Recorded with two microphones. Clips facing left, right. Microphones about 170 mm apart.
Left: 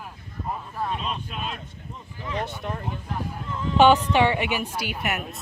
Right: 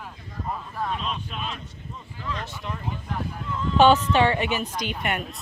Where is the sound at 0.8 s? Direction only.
5° left (ahead or behind).